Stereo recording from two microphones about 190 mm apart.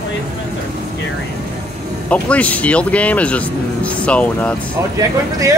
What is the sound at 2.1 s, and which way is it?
Speech, 5° left (ahead or behind).